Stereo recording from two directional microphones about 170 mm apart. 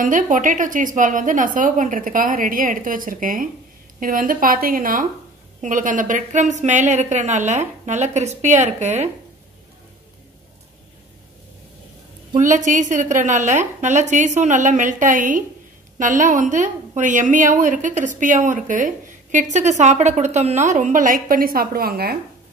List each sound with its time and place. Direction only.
0.0 s a woman's voice: 50° right (ahead or behind)
12.4 s a woman's voice: 45° right (ahead or behind); by 22.1 s 65° right (ahead or behind)